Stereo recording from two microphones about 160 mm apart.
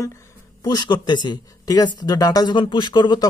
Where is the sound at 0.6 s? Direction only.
25° left (ahead or behind).